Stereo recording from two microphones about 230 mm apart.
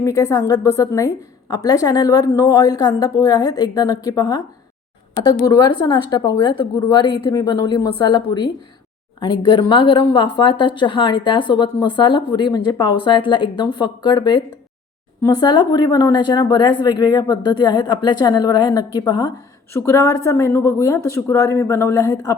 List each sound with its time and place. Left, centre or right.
0.0 s a woman's voice: centre